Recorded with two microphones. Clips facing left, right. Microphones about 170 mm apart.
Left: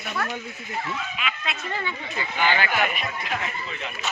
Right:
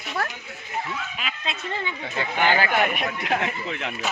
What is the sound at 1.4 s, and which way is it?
Speech, 25° right (ahead or behind).